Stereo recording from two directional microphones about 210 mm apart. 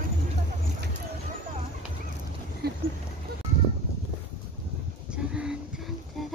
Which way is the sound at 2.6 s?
50° right (ahead or behind).